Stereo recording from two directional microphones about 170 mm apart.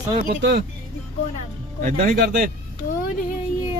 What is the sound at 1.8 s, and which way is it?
Speech, 50° right (ahead or behind).